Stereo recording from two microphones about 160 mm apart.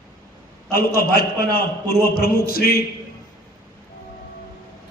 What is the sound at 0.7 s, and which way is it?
A man's voice, 70° left (ahead or behind).